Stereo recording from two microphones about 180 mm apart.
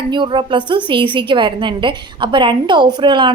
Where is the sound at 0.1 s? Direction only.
25° right (ahead or behind).